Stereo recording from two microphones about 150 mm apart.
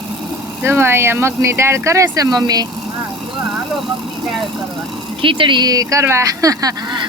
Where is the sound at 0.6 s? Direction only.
15° right (ahead or behind).